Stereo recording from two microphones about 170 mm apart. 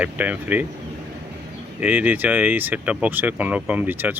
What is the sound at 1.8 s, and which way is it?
Speech, 10° right (ahead or behind).